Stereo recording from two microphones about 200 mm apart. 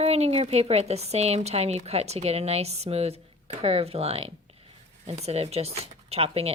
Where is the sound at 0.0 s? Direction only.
30° right (ahead or behind).